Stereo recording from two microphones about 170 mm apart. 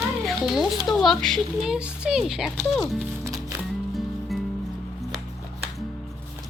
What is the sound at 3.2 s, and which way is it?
Music, 20° right (ahead or behind).